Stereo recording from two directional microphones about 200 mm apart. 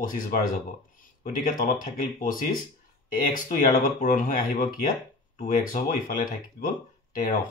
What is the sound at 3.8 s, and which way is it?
Speech, 40° left (ahead or behind).